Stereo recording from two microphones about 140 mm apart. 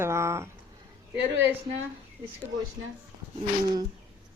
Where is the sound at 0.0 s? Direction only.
20° right (ahead or behind).